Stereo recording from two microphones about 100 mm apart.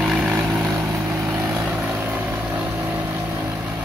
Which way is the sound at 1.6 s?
10° right (ahead or behind).